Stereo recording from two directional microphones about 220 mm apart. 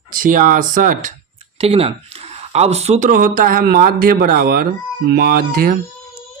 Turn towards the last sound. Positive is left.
turn(degrees=-45)  # may be behind; listen again after turning